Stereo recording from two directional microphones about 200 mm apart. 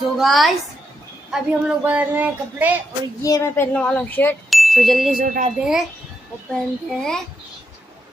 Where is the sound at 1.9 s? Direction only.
5° right (ahead or behind).